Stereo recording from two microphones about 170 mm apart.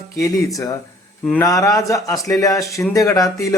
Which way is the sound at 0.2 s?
20° left (ahead or behind).